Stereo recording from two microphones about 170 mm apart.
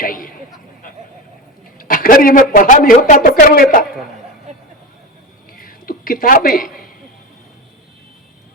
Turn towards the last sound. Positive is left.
turn(degrees=55)  # may be behind; listen again after turning